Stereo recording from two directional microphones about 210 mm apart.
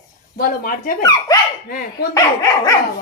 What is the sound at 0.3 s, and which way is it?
Speech, 45° left (ahead or behind).